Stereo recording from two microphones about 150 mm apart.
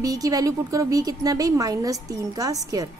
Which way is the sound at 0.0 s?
25° right (ahead or behind).